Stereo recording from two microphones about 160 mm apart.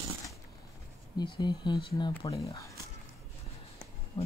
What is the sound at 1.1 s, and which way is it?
Speech, 30° left (ahead or behind).